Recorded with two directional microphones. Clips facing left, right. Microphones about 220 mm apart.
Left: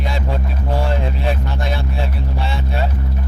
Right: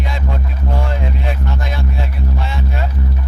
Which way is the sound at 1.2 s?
30° left (ahead or behind).